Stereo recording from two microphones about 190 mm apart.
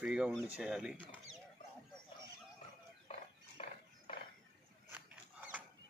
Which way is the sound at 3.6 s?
30° left (ahead or behind).